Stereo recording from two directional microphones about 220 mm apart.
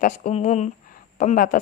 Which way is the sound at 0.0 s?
30° left (ahead or behind).